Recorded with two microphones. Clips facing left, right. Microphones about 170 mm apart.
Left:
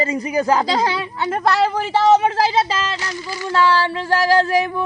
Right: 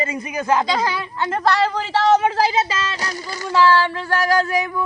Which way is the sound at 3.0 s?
40° right (ahead or behind).